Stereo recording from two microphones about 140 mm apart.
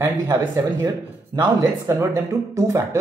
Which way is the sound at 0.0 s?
20° right (ahead or behind).